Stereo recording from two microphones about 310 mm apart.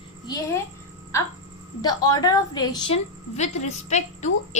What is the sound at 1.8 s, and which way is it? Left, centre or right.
A woman's voice, centre.